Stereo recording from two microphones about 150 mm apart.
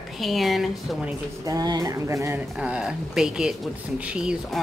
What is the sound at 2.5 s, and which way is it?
Speech, 5° right (ahead or behind).